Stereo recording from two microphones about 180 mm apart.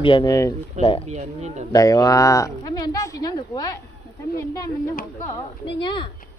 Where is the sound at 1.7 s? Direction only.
20° left (ahead or behind).